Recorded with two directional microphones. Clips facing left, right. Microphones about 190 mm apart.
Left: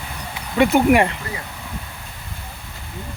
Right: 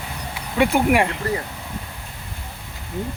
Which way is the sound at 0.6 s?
5° right (ahead or behind).